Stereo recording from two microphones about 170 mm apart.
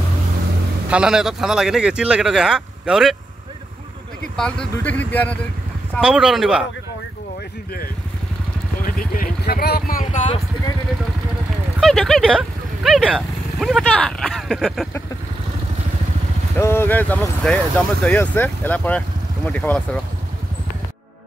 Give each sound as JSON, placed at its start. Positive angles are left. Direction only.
{"t": 0.8, "sound": "speech", "side_deg": -5}
{"t": 4.4, "sound": "speech", "side_deg": 5}
{"t": 5.9, "sound": "speech", "side_deg": -5}
{"t": 8.8, "sound": "vehicle", "side_deg": 55}
{"t": 11.8, "sound": "speech", "side_deg": 5}
{"t": 16.5, "sound": "speech", "side_deg": 15}